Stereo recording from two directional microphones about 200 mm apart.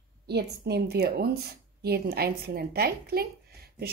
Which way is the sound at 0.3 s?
55° right (ahead or behind).